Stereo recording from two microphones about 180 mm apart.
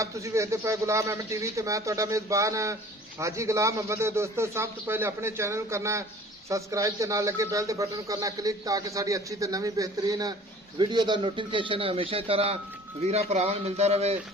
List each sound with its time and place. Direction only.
0.0 s speech: 15° right (ahead or behind); by 14.2 s 35° right (ahead or behind)